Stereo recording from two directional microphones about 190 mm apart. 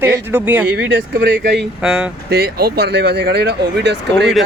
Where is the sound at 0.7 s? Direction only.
65° right (ahead or behind).